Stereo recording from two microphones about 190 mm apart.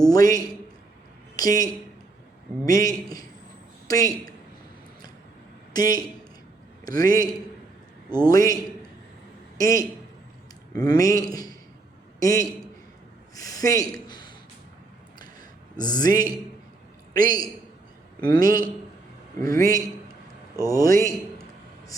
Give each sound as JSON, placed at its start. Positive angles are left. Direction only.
{"t": 0.0, "sound": "a man's voice", "side_deg": 20}
{"t": 5.7, "sound": "a man's voice", "side_deg": 20}
{"t": 9.6, "sound": "a man's voice", "side_deg": 20}
{"t": 15.2, "sound": "a sound", "side_deg": 20}
{"t": 17.2, "sound": "a man's voice", "side_deg": 20}